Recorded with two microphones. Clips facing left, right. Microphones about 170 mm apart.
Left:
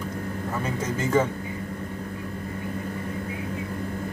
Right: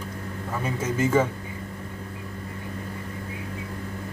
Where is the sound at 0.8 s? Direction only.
10° right (ahead or behind).